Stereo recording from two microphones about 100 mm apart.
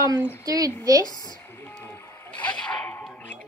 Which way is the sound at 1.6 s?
20° left (ahead or behind).